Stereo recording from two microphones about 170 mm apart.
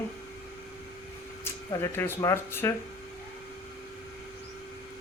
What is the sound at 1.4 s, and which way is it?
Speech, 15° left (ahead or behind).